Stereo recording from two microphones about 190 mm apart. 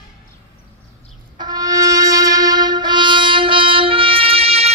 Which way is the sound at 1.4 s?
20° right (ahead or behind).